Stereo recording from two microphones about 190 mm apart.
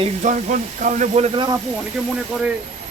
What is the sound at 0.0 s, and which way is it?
Speech, 40° right (ahead or behind).